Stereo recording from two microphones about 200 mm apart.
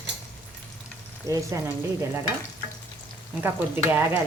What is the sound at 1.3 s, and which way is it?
Speech, 15° right (ahead or behind).